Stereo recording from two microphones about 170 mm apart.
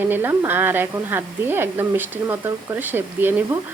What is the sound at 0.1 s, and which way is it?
Speech, 10° right (ahead or behind).